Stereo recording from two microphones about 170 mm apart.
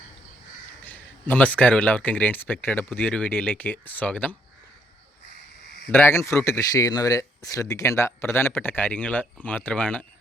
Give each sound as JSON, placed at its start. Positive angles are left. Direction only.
{"t": 0.9, "sound": "speech", "side_deg": 10}
{"t": 5.9, "sound": "speech", "side_deg": 15}